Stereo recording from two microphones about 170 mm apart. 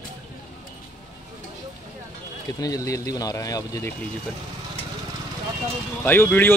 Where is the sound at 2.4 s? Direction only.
20° left (ahead or behind).